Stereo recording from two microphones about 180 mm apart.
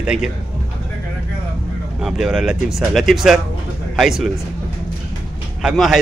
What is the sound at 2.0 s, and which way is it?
A man's voice, centre (ahead or behind).